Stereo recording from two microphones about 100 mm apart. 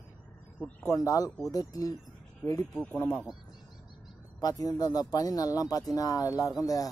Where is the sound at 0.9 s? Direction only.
35° left (ahead or behind).